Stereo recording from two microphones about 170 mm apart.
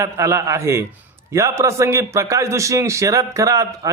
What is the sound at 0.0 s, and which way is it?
A man's voice, 20° right (ahead or behind).